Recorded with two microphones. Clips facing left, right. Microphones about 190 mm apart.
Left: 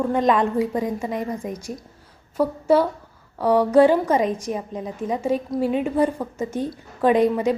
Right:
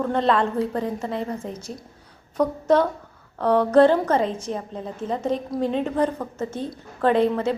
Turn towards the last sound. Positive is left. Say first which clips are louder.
# left 2 dB
turn(degrees=10)  # may be behind; listen again after turning